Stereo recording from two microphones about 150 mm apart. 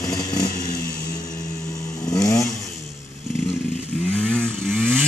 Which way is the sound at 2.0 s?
25° left (ahead or behind).